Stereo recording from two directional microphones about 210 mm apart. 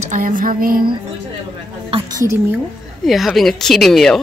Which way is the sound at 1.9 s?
20° right (ahead or behind).